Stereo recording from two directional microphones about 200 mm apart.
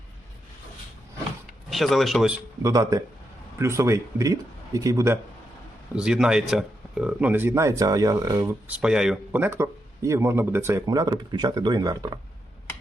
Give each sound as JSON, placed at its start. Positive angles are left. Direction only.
{"t": 1.7, "sound": "speech", "side_deg": 0}
{"t": 2.6, "sound": "speech", "side_deg": -15}
{"t": 6.0, "sound": "speech", "side_deg": -5}